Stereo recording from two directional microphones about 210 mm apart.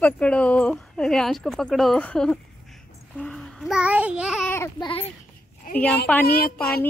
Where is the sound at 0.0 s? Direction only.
5° left (ahead or behind).